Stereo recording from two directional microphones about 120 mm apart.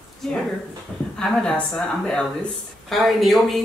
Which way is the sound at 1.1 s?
10° left (ahead or behind).